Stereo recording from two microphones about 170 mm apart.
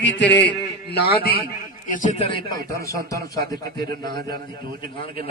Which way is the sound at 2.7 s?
60° right (ahead or behind).